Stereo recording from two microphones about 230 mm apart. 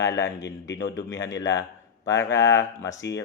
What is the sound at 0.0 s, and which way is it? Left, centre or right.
Speech, centre.